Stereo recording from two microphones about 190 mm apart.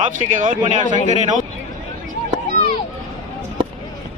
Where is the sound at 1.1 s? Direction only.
40° right (ahead or behind).